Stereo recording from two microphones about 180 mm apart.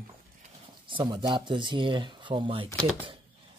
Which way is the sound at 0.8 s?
25° right (ahead or behind).